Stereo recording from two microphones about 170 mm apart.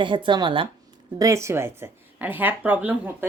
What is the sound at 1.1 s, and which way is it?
Speech, 20° right (ahead or behind).